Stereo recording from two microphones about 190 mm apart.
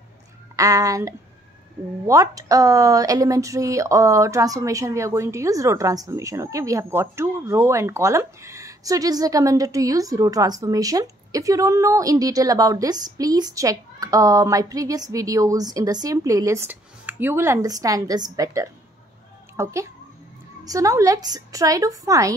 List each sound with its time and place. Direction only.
0.6 s a child's voice: 15° right (ahead or behind)